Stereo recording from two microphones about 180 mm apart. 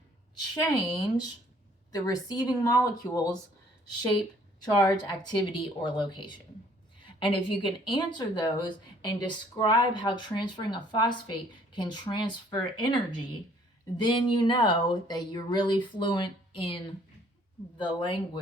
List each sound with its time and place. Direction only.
0.8 s a woman's voice: 25° left (ahead or behind)
4.6 s a woman's voice: 20° left (ahead or behind)